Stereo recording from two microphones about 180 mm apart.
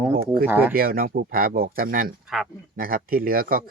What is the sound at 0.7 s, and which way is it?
Speech, 55° right (ahead or behind).